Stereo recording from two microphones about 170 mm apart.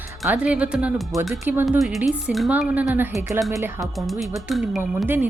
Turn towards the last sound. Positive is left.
turn(degrees=0)  # may be behind; listen again after turning